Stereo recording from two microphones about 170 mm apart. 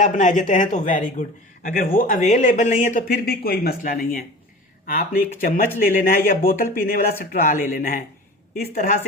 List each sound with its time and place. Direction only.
0.0 s speech: 45° left (ahead or behind)